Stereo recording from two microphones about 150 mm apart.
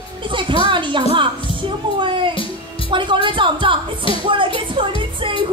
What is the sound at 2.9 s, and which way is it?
Speech, 30° right (ahead or behind).